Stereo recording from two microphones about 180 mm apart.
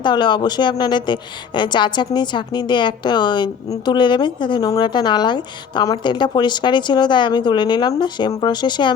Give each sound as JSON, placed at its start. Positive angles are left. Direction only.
{"t": 0.0, "sound": "a woman's voice", "side_deg": 25}